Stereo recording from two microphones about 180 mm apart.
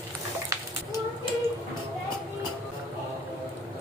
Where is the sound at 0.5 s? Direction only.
20° right (ahead or behind).